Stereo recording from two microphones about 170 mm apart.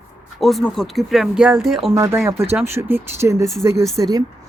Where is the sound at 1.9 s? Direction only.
15° right (ahead or behind).